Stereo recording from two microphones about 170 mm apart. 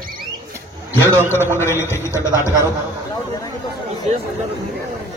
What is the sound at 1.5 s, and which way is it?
A man's voice, 15° left (ahead or behind).